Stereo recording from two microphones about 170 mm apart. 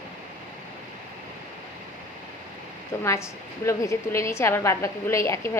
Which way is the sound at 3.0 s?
15° left (ahead or behind).